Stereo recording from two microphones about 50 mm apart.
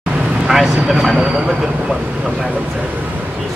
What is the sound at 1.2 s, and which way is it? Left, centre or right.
Vehicle, centre.